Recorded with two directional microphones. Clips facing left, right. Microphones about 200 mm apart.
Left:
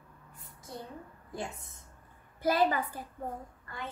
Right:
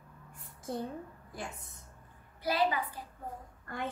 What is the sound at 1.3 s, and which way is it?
Speech, 25° left (ahead or behind).